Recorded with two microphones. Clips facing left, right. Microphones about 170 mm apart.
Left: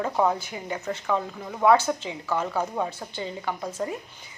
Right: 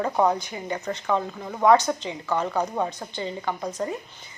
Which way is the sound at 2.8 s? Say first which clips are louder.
Right 2 dB; 5° left (ahead or behind).